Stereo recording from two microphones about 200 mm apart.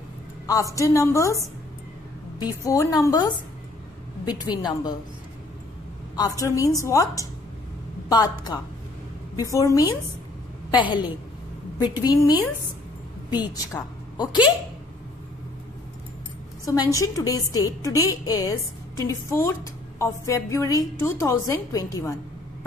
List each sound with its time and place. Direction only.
0.7 s a woman's voice: 15° left (ahead or behind)
6.1 s a woman's voice: 20° left (ahead or behind)
13.5 s a woman's voice: 20° left (ahead or behind)
16.6 s speech: 15° left (ahead or behind)